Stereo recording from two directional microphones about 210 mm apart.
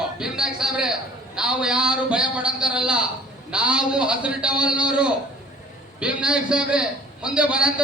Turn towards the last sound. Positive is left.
turn(degrees=-5)  # may be behind; listen again after turning